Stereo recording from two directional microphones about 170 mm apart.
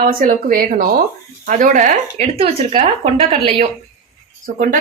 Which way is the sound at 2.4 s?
30° right (ahead or behind).